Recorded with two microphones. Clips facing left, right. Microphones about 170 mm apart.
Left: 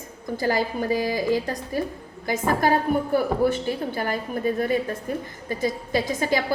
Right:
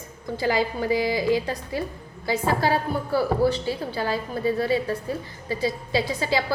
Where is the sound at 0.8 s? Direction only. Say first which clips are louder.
Right 1 dB; 15° right (ahead or behind).